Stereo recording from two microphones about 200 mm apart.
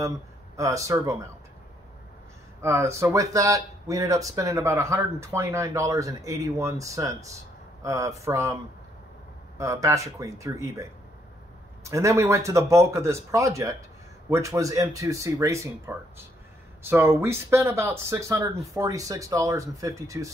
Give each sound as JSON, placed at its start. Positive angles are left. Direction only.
{"t": 0.6, "sound": "speech", "side_deg": -15}
{"t": 2.6, "sound": "speech", "side_deg": -15}
{"t": 9.6, "sound": "speech", "side_deg": -15}